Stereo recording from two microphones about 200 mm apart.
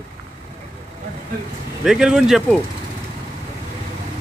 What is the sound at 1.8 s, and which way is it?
Speech, 5° right (ahead or behind).